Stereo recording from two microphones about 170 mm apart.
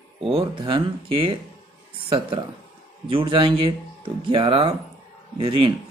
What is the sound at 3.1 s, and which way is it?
Speech, 30° right (ahead or behind).